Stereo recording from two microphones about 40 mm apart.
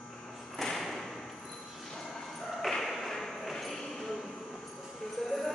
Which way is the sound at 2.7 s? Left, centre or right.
Centre.